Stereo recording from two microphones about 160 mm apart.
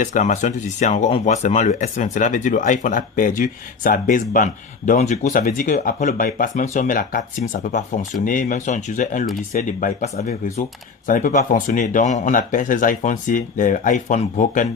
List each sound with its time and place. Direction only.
0.0 s speech: 50° left (ahead or behind)